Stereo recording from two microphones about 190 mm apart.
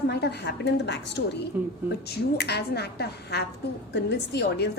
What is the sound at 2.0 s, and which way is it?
A woman's voice, 60° left (ahead or behind).